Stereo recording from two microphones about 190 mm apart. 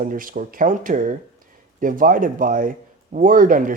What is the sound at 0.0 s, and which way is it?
A man's voice, 45° right (ahead or behind).